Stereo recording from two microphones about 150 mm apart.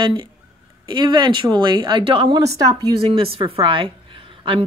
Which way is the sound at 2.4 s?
20° right (ahead or behind).